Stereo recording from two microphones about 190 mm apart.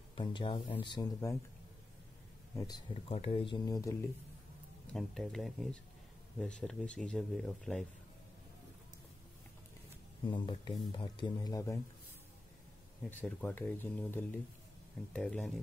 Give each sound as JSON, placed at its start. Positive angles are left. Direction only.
{"t": 0.1, "sound": "speech", "side_deg": 25}
{"t": 2.5, "sound": "speech", "side_deg": 20}
{"t": 3.1, "sound": "speech", "side_deg": 30}
{"t": 4.9, "sound": "speech", "side_deg": 0}
{"t": 10.2, "sound": "speech", "side_deg": 25}
{"t": 13.2, "sound": "speech", "side_deg": 10}